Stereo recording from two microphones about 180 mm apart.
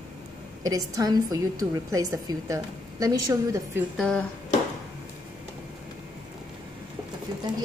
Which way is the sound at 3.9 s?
5° left (ahead or behind).